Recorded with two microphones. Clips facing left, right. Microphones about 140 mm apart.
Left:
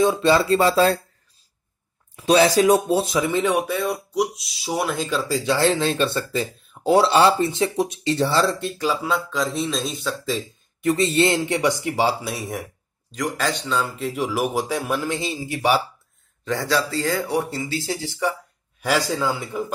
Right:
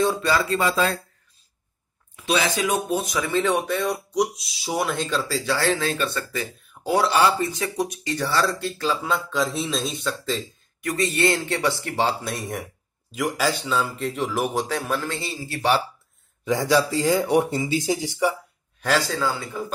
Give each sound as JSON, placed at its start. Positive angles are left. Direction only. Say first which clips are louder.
{"t": 0.0, "sound": "speech", "louder": "left 4 dB", "side_deg": 20}
{"t": 2.1, "sound": "speech", "louder": "left 7 dB", "side_deg": 35}
{"t": 3.3, "sound": "speech", "louder": "left 1 dB", "side_deg": 15}
{"t": 5.2, "sound": "speech", "louder": "left 7 dB", "side_deg": 20}
{"t": 9.0, "sound": "speech", "louder": "left 1 dB", "side_deg": 0}
{"t": 10.8, "sound": "speech", "louder": "left 4 dB", "side_deg": 25}
{"t": 16.4, "sound": "speech", "louder": "right 3 dB", "side_deg": -15}
{"t": 18.8, "sound": "speech", "louder": "left 1 dB", "side_deg": 10}